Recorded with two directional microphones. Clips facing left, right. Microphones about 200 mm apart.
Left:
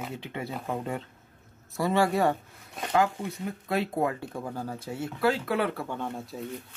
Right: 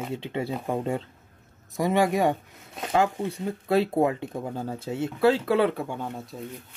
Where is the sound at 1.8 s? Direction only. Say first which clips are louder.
Right 2 dB; 15° right (ahead or behind).